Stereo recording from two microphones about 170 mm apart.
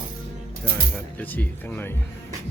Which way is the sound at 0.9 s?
10° left (ahead or behind).